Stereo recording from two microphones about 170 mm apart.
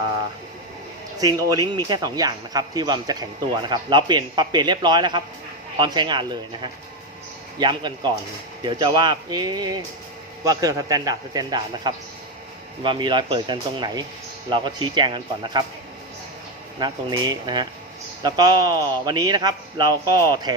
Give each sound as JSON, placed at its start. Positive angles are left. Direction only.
{"t": 1.2, "sound": "speech", "side_deg": -20}
{"t": 16.8, "sound": "speech", "side_deg": -25}